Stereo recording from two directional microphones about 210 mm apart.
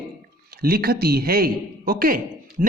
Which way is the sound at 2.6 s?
5° right (ahead or behind).